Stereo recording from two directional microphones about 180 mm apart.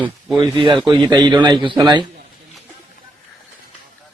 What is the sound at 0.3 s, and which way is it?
Speech, 25° right (ahead or behind).